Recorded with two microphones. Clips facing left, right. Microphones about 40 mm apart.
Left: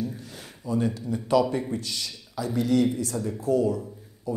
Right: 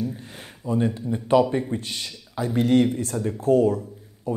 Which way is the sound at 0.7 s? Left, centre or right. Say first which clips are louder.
Right 3 dB; right.